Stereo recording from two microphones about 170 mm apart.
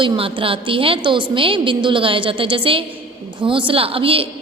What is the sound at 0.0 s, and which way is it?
A woman's voice, 30° right (ahead or behind).